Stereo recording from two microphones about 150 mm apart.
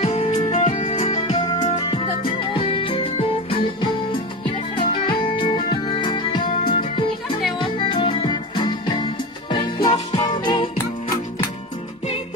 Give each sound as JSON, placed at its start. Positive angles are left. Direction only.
{"t": 0.0, "sound": "music", "side_deg": 40}
{"t": 1.8, "sound": "music", "side_deg": 35}